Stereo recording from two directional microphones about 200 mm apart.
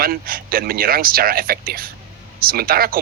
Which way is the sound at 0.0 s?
45° right (ahead or behind).